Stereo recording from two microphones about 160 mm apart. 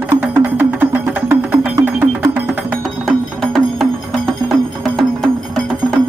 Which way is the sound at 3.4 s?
5° left (ahead or behind).